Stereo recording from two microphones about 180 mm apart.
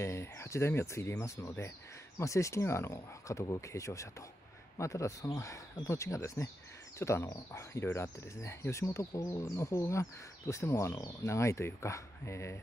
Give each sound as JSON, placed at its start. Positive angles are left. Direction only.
{"t": 0.0, "sound": "speech", "side_deg": 15}